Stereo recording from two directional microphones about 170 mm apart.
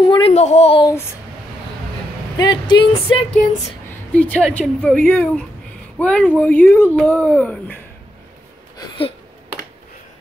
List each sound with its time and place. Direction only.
0.1 s a child's voice: 35° left (ahead or behind)
2.3 s speech: 25° left (ahead or behind)
3.9 s speech: 10° left (ahead or behind)
8.7 s a sound: 25° left (ahead or behind)